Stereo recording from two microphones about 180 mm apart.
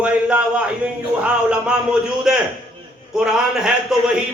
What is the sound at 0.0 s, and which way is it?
A man's voice, 5° right (ahead or behind).